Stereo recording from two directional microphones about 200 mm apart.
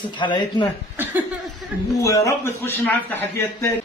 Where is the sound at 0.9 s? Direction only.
10° right (ahead or behind).